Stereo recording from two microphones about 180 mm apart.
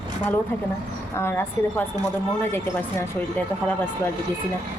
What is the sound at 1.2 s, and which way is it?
Speech, 15° left (ahead or behind).